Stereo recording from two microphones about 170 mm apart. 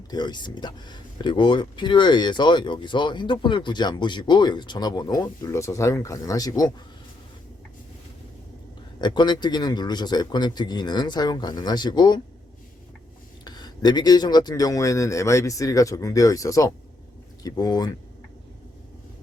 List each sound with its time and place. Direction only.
0.1 s speech: 25° left (ahead or behind)
9.0 s speech: 25° left (ahead or behind)
13.4 s speech: 25° left (ahead or behind)